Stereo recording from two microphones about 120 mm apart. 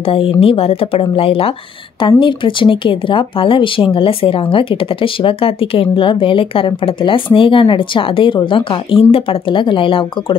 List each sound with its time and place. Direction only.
0.1 s speech: 50° left (ahead or behind)